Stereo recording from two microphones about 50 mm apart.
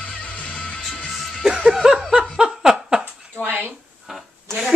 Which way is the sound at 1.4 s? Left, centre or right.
Centre.